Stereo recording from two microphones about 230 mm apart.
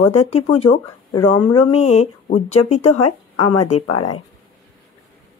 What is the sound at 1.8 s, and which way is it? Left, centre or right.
Speech, left.